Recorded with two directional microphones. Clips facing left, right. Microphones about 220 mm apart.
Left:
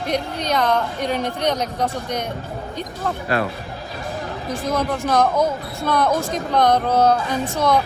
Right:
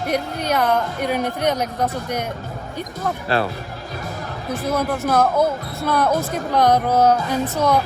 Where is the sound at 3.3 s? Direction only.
30° right (ahead or behind).